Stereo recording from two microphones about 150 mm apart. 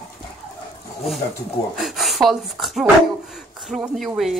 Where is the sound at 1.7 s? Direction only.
Centre (ahead or behind).